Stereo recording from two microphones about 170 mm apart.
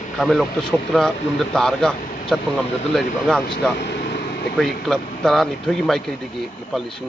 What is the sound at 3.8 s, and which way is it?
Vehicle, 80° left.